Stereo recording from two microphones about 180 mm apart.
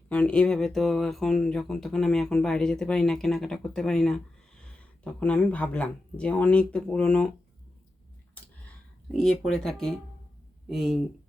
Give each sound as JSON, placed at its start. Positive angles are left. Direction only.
{"t": 0.1, "sound": "speech", "side_deg": 5}
{"t": 8.4, "sound": "a sound", "side_deg": 10}
{"t": 9.1, "sound": "speech", "side_deg": 5}